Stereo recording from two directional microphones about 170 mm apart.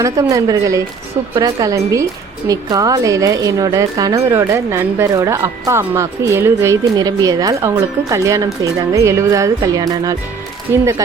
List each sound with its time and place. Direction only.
0.0 s speech: 20° right (ahead or behind)